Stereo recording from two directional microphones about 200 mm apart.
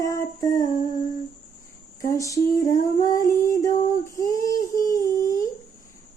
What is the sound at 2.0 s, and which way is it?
Female singing, 15° left (ahead or behind).